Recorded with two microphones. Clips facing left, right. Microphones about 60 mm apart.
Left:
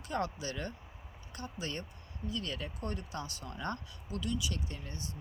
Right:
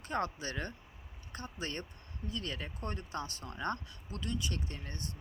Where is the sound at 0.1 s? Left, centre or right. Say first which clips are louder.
Even; right.